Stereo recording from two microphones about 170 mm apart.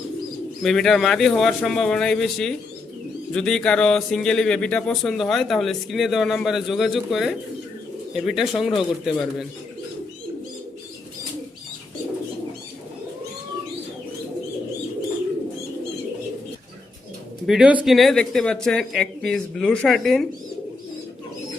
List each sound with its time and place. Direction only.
0.6 s speech: centre (ahead or behind)
17.4 s speech: 5° right (ahead or behind)